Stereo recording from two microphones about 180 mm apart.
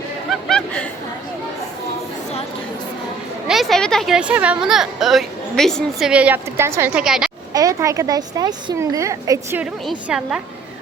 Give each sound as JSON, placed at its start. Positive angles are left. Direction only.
{"t": 0.3, "sound": "a sound", "side_deg": 0}
{"t": 3.4, "sound": "a woman's voice", "side_deg": 0}
{"t": 7.5, "sound": "a woman's voice", "side_deg": -20}
{"t": 10.1, "sound": "a woman's voice", "side_deg": -5}